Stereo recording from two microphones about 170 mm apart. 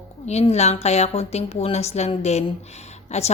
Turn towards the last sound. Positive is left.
turn(degrees=40)  # may be behind; listen again after turning